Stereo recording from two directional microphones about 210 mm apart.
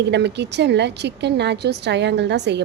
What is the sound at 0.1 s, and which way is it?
A woman's voice, 55° right (ahead or behind).